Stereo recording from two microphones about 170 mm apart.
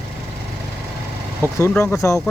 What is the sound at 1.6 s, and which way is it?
Speech, 15° left (ahead or behind).